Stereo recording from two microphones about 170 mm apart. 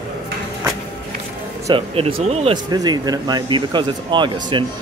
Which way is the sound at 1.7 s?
30° right (ahead or behind).